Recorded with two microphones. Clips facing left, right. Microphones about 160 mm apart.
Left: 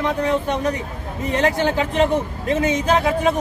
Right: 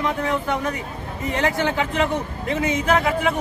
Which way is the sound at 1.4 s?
25° left (ahead or behind).